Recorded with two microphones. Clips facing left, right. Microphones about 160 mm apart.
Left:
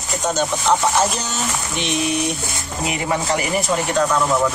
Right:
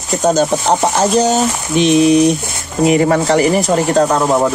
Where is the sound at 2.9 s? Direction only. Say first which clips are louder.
Right 10 dB; 50° right (ahead or behind).